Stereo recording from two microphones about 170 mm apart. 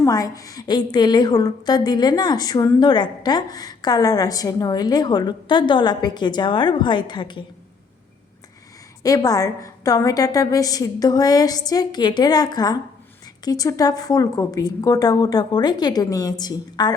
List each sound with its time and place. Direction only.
0.0 s a woman's voice: 20° left (ahead or behind)
9.0 s a woman's voice: 20° left (ahead or behind)